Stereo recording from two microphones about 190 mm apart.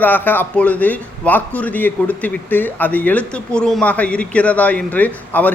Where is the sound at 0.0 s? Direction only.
10° left (ahead or behind).